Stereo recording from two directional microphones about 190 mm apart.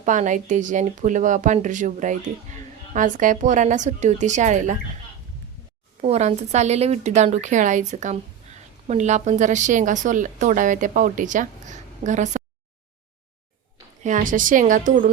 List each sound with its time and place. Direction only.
0.0 s speech: 40° right (ahead or behind)
6.0 s speech: 35° right (ahead or behind)
14.0 s a woman's voice: 40° right (ahead or behind)